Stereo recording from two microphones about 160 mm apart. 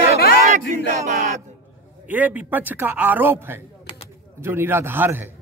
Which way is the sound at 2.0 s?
10° right (ahead or behind).